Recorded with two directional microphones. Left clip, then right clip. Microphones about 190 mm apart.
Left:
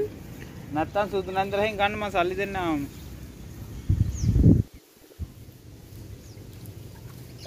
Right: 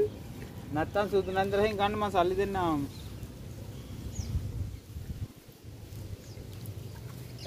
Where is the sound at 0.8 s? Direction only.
25° right (ahead or behind).